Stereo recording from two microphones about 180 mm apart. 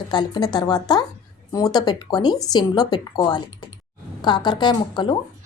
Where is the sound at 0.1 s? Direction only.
25° left (ahead or behind).